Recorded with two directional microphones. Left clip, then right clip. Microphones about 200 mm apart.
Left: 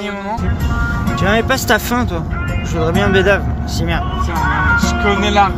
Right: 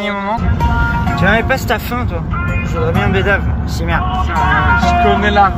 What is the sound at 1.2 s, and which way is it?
Speech, 35° left (ahead or behind).